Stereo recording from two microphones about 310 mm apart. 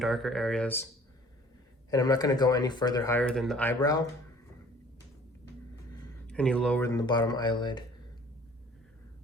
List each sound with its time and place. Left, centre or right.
0.0 s speech: centre
1.9 s speech: centre
6.2 s speech: centre